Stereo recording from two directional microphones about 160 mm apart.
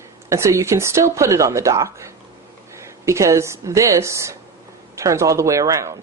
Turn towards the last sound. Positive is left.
turn(degrees=-20)  # may be behind; listen again after turning